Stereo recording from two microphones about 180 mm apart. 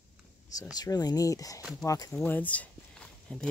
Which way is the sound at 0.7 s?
20° left (ahead or behind).